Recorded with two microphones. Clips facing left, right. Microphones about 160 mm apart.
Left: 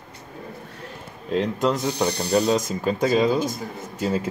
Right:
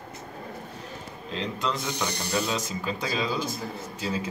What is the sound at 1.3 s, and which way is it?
Speech, 50° left (ahead or behind).